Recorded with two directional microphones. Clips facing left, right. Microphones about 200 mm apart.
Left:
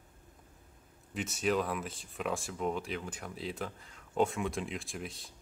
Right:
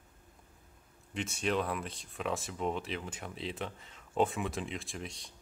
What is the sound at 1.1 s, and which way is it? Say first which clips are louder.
Speech: left 1 dB; centre (ahead or behind).